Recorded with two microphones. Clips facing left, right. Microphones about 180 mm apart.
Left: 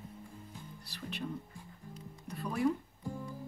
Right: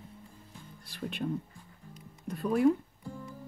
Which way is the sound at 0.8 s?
50° right (ahead or behind).